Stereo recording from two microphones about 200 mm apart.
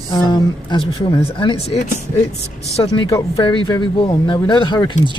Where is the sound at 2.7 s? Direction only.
25° left (ahead or behind).